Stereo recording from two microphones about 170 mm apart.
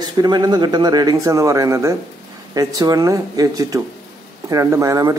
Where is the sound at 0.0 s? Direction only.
25° right (ahead or behind).